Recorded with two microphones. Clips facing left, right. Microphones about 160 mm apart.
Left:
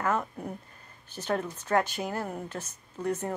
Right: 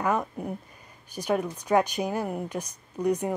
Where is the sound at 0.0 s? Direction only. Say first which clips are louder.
Right 3 dB; 15° right (ahead or behind).